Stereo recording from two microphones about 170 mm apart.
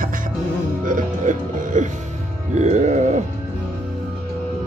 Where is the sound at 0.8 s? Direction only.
50° right (ahead or behind).